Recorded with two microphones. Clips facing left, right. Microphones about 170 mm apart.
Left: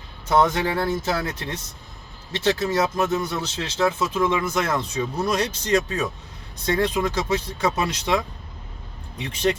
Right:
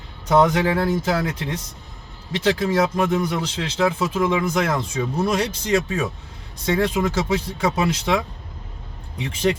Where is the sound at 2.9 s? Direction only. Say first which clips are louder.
Right 2 dB; 10° right (ahead or behind).